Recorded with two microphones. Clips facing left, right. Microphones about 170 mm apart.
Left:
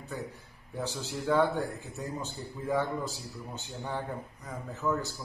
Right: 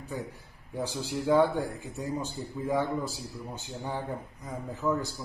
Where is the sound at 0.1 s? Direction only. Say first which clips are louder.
Right 2 dB; 10° right (ahead or behind).